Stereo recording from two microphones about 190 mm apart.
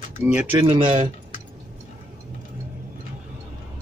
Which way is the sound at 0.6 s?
35° right (ahead or behind).